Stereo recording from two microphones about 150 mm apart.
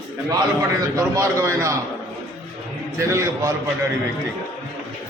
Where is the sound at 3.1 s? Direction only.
20° right (ahead or behind).